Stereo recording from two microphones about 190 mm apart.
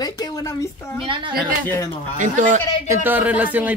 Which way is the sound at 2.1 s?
40° right (ahead or behind).